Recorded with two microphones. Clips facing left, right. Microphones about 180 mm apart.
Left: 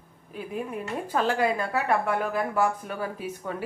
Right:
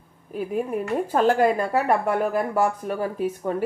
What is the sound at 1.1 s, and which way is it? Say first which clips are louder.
A woman's voice: right 5 dB; 50° right (ahead or behind).